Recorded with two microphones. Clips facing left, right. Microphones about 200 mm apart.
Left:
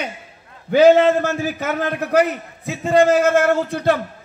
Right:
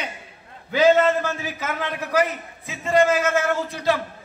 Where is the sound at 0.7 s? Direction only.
60° left (ahead or behind).